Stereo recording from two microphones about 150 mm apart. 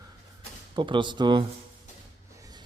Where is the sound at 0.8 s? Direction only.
35° right (ahead or behind).